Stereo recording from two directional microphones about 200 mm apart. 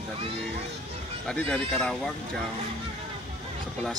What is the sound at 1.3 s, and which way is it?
Speech, 5° left (ahead or behind).